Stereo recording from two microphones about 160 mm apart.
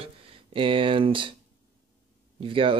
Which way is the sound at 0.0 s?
35° right (ahead or behind).